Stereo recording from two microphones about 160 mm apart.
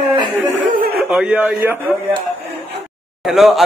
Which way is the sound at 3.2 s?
Centre (ahead or behind).